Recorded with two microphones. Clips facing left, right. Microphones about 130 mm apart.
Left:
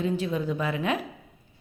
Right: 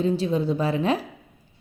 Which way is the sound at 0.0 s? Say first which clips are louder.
Right 4 dB; 30° right (ahead or behind).